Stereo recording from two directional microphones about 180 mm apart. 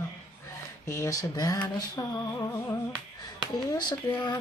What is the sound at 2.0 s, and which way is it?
Mantra, 15° left (ahead or behind).